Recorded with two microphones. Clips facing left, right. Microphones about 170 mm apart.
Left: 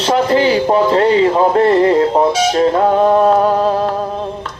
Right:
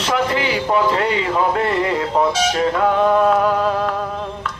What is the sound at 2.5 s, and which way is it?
Music, 35° left (ahead or behind).